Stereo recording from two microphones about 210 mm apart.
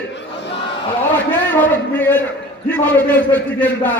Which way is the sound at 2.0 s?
10° left (ahead or behind).